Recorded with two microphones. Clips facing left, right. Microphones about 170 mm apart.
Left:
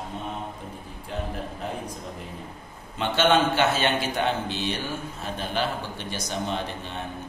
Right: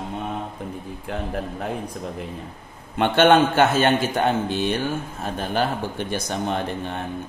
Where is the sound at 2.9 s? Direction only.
55° right (ahead or behind).